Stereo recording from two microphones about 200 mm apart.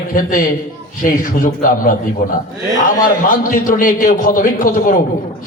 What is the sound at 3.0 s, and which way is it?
A man's voice, 45° left (ahead or behind).